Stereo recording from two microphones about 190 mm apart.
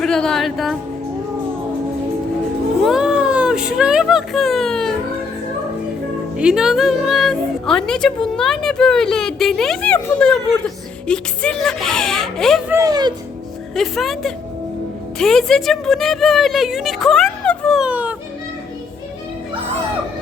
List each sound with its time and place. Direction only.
0.0 s a woman's voice: 5° left (ahead or behind)
2.8 s cat: 5° right (ahead or behind)
6.3 s a woman's voice: 5° right (ahead or behind)
12.7 s speech: 20° right (ahead or behind)
13.7 s a woman's voice: centre (ahead or behind)